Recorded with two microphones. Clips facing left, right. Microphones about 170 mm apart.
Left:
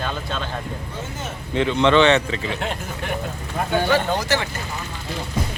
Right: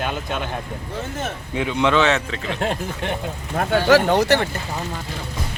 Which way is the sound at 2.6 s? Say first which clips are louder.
Right 4 dB; 35° right (ahead or behind).